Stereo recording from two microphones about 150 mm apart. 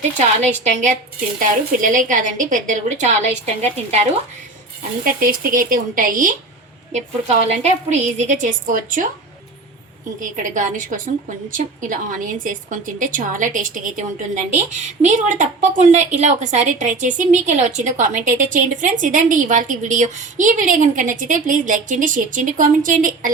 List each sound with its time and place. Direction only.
0.2 s a woman's voice: 50° right (ahead or behind)
5.0 s a woman's voice: 70° right (ahead or behind)
6.9 s a woman's voice: 45° right (ahead or behind); by 9.0 s 65° right (ahead or behind)
10.2 s a woman's voice: 60° right (ahead or behind)